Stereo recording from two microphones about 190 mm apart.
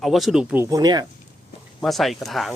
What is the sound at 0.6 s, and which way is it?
Speech, 20° right (ahead or behind).